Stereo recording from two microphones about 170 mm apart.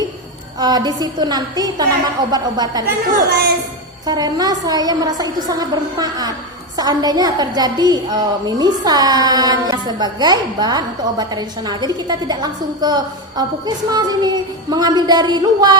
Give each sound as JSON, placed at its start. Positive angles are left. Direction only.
{"t": 0.6, "sound": "a woman's voice", "side_deg": -25}
{"t": 3.2, "sound": "a woman's voice", "side_deg": -65}
{"t": 4.0, "sound": "a woman's voice", "side_deg": -25}